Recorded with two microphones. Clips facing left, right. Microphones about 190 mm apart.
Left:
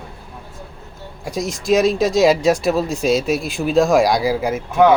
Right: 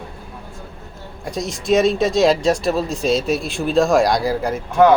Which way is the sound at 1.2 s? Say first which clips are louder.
Left 2 dB; centre (ahead or behind).